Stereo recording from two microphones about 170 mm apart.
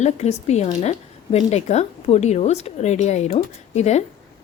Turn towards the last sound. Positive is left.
turn(degrees=40)  # may be behind; listen again after turning